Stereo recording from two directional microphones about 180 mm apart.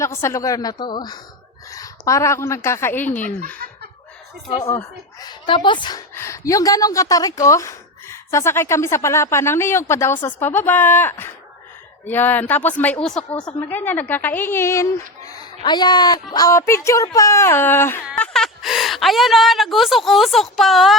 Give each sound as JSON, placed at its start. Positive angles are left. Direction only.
{"t": 0.0, "sound": "a woman's voice", "side_deg": 15}
{"t": 5.2, "sound": "a woman's voice", "side_deg": 25}